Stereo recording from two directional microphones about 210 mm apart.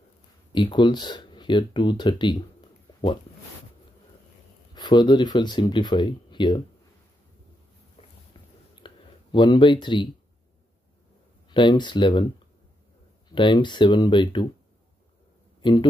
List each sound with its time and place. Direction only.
0.5 s speech: 20° left (ahead or behind)
4.7 s speech: 20° left (ahead or behind)
8.8 s a sound: 20° left (ahead or behind)
11.4 s speech: 20° left (ahead or behind)
13.3 s speech: 20° left (ahead or behind)
15.6 s a man's voice: 20° left (ahead or behind)